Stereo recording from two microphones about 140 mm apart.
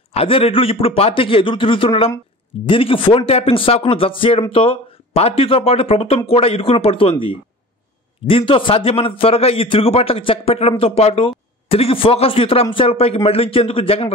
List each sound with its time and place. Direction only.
0.1 s a man's voice: 45° left (ahead or behind)